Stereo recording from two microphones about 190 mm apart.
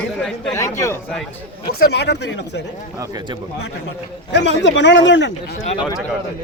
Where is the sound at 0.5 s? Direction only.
15° left (ahead or behind).